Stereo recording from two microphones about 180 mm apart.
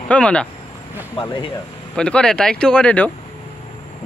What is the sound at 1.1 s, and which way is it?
Speech, 25° left (ahead or behind).